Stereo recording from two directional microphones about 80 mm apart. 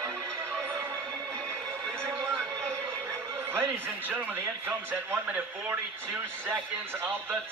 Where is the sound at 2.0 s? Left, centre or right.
Right.